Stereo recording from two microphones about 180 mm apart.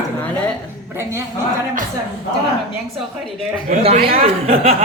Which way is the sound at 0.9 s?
15° right (ahead or behind).